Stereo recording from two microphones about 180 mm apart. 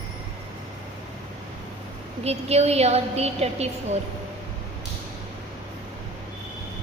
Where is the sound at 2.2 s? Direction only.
35° right (ahead or behind).